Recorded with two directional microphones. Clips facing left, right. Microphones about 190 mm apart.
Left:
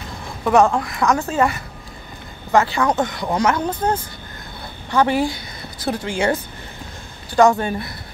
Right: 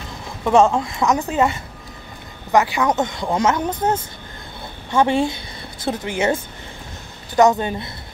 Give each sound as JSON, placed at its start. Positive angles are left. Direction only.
{"t": 0.5, "sound": "a woman's voice", "side_deg": -25}